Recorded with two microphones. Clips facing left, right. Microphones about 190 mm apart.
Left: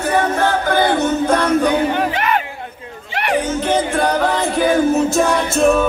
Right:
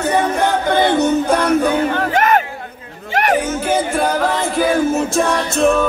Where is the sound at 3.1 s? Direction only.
45° right (ahead or behind).